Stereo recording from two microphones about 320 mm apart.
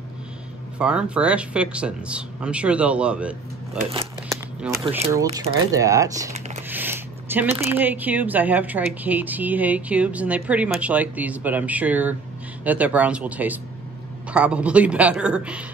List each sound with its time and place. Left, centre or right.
0.7 s speech: centre
3.9 s crumpling: centre
4.6 s speech: centre
4.8 s speech: centre